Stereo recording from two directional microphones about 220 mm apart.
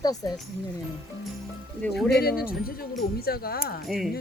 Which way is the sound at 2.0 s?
45° left (ahead or behind).